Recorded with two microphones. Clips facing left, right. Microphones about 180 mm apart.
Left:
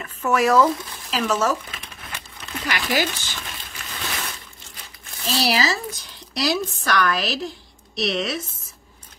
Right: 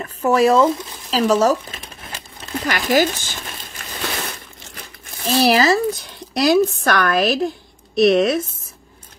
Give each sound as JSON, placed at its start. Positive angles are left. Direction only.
{"t": 0.0, "sound": "speech", "side_deg": -30}
{"t": 1.1, "sound": "crumpling", "side_deg": -35}
{"t": 4.7, "sound": "speech", "side_deg": -50}